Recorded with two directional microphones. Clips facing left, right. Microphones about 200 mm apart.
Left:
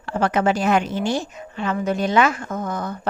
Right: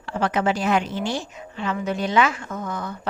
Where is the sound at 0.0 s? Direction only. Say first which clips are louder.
Left 3 dB; 45° left (ahead or behind).